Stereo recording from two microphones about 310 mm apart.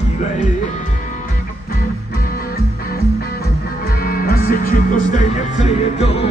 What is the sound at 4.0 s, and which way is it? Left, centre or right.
Music, left.